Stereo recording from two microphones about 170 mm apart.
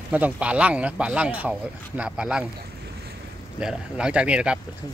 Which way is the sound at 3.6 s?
5° right (ahead or behind).